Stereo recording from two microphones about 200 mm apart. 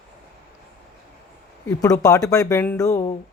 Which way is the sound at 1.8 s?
15° left (ahead or behind).